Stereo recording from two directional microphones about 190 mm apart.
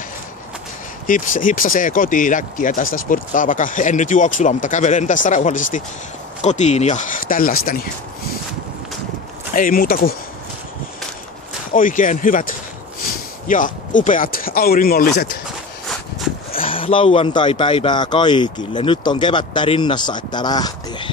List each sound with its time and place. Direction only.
1.0 s speech: 45° left (ahead or behind)
9.6 s speech: 45° left (ahead or behind)
11.7 s speech: 45° left (ahead or behind)
16.6 s speech: 30° left (ahead or behind)